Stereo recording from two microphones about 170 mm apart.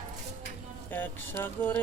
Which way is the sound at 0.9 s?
10° left (ahead or behind).